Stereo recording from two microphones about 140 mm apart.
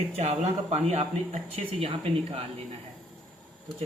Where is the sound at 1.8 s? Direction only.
40° right (ahead or behind).